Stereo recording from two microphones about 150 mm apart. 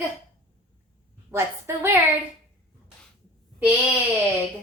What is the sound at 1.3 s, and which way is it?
Speech, 15° right (ahead or behind).